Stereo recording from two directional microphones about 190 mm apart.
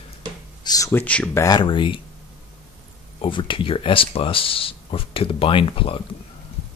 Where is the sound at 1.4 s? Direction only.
25° left (ahead or behind).